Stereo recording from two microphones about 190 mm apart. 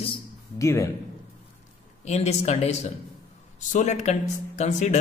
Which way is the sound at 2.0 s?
35° left (ahead or behind).